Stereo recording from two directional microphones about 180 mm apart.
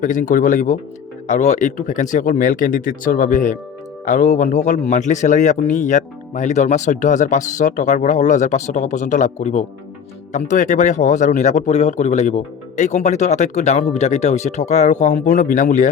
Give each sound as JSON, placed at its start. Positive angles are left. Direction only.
{"t": 0.0, "sound": "speech", "side_deg": 45}